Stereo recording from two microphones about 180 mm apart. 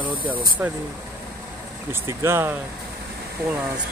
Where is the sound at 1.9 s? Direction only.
15° right (ahead or behind).